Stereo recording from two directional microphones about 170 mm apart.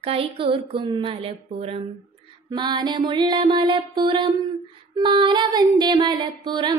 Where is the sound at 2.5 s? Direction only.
30° right (ahead or behind).